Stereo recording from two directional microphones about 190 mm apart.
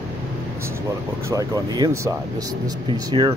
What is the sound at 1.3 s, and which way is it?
Speech, 20° right (ahead or behind).